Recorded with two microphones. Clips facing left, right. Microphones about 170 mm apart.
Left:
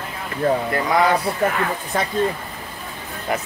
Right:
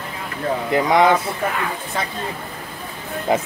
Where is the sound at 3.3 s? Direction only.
20° right (ahead or behind).